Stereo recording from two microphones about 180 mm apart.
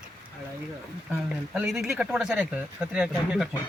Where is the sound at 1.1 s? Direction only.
5° right (ahead or behind).